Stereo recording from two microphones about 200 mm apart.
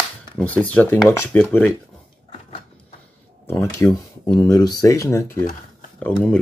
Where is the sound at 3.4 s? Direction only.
10° left (ahead or behind).